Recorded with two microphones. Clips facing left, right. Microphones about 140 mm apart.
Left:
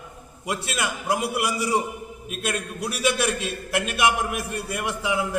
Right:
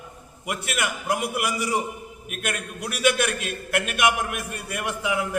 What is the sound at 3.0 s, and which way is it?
A man's voice, 30° left (ahead or behind).